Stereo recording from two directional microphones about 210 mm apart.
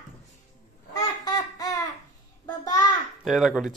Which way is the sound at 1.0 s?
15° left (ahead or behind).